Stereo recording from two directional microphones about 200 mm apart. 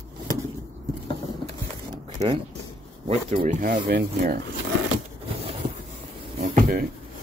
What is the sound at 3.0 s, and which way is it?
Speech, 35° right (ahead or behind).